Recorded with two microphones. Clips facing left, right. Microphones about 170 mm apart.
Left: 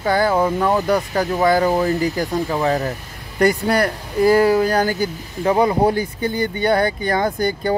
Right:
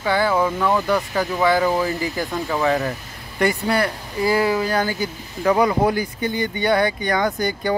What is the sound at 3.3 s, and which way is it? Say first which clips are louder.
Speech: left 3 dB; 45° left (ahead or behind).